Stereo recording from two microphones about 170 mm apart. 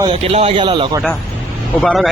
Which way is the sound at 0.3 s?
35° right (ahead or behind).